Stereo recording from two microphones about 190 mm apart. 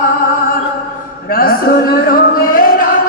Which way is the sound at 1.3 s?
50° left (ahead or behind).